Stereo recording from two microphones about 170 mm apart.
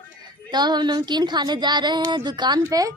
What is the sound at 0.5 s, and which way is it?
Speech, 25° right (ahead or behind).